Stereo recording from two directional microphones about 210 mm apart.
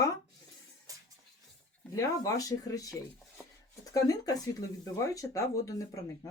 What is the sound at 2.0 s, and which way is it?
Speech, 15° left (ahead or behind).